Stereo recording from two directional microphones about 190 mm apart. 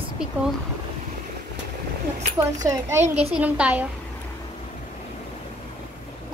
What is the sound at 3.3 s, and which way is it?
Speech, 5° right (ahead or behind).